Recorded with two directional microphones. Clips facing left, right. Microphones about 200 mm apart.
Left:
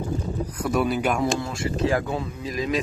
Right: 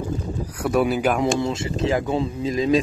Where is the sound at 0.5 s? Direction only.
10° right (ahead or behind).